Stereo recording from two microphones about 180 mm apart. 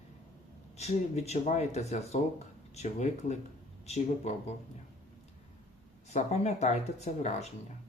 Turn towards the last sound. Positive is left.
turn(degrees=40)  # may be behind; listen again after turning